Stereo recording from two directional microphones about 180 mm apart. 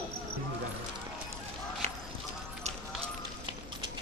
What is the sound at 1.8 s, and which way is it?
Clip-clop, 40° right (ahead or behind).